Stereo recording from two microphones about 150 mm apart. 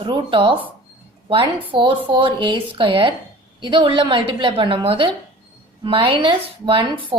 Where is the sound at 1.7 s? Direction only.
35° right (ahead or behind).